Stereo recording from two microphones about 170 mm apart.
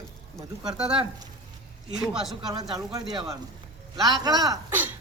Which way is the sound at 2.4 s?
25° right (ahead or behind).